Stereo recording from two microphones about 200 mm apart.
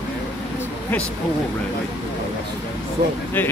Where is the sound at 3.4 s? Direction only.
10° left (ahead or behind).